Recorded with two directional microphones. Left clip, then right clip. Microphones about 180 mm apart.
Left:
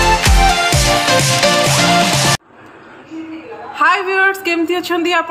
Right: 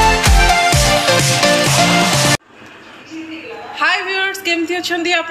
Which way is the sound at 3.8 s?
50° left (ahead or behind).